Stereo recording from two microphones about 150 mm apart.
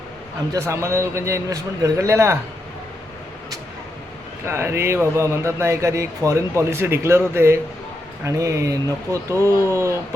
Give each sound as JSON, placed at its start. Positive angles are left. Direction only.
{"t": 0.5, "sound": "speech", "side_deg": -20}
{"t": 4.4, "sound": "speech", "side_deg": -15}